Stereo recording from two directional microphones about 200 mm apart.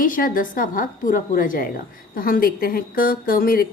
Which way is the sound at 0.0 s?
45° left (ahead or behind).